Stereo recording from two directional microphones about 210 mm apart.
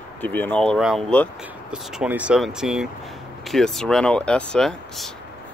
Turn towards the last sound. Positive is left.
turn(degrees=0)  # may be behind; listen again after turning